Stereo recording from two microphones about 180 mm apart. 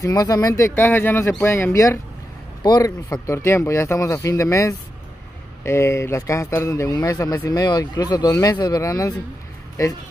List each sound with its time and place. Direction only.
0.0 s speech: 20° left (ahead or behind)